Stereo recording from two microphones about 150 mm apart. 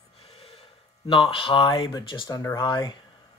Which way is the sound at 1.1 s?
35° left (ahead or behind).